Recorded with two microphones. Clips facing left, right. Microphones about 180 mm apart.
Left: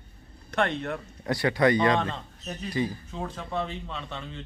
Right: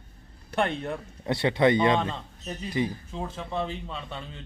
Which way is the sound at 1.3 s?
25° right (ahead or behind).